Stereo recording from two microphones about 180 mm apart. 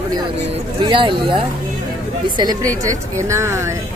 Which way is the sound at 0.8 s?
25° right (ahead or behind).